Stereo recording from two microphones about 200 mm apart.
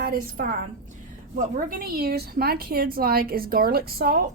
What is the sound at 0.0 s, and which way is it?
A woman's voice, 50° right (ahead or behind).